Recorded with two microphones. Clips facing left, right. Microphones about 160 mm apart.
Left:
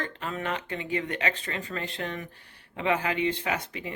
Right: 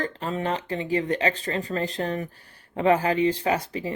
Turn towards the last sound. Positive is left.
turn(degrees=-35)  # may be behind; listen again after turning